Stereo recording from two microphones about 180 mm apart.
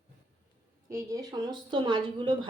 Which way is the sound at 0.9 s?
20° right (ahead or behind).